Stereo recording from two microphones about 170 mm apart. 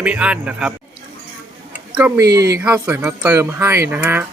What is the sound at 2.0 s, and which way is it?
Speech, 10° right (ahead or behind).